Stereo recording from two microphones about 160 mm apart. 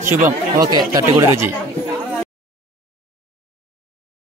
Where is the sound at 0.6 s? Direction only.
25° right (ahead or behind).